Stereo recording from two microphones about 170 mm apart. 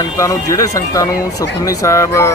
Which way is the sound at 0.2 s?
20° left (ahead or behind).